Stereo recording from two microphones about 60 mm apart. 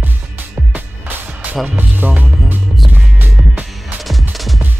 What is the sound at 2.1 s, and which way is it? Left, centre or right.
Music, right.